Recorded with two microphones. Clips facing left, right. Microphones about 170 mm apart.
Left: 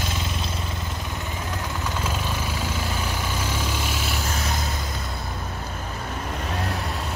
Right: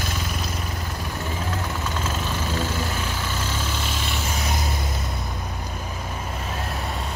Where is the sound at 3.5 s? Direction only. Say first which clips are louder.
Left 1 dB; 10° left (ahead or behind).